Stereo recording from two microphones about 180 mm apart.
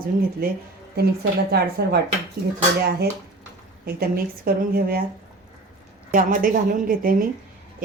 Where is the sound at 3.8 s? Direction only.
55° right (ahead or behind).